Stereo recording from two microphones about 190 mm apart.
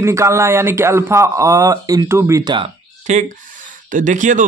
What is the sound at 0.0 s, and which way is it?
A man's voice, 15° right (ahead or behind).